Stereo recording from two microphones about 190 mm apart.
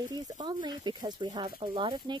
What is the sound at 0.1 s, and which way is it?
Speech, 25° right (ahead or behind).